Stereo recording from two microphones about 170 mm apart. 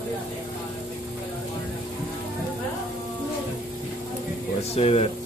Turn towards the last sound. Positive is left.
turn(degrees=35)  # may be behind; listen again after turning